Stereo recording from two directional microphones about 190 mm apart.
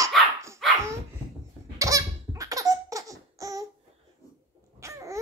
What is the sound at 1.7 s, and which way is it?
Laughter, 15° right (ahead or behind).